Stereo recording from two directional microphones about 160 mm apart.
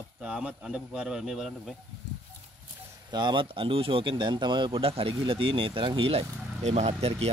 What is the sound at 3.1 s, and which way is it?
Speech, 30° right (ahead or behind).